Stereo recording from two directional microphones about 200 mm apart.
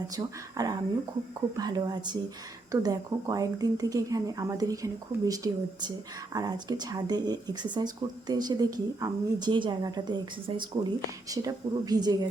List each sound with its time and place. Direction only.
0.2 s speech: 15° right (ahead or behind)